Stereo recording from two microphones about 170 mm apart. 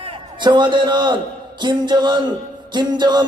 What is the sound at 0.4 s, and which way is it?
A man's voice, 25° right (ahead or behind).